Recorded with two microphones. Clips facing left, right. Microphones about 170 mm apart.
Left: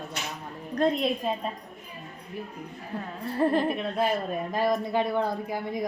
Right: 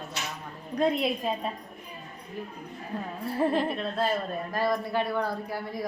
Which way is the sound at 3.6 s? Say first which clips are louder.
Left 2 dB; 15° left (ahead or behind).